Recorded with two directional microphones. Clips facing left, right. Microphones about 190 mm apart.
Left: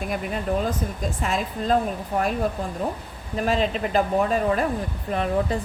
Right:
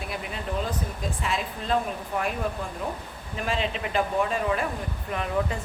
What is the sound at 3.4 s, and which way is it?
Speech, 40° left (ahead or behind).